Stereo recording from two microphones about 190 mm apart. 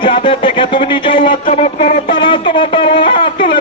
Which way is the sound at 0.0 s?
25° left (ahead or behind).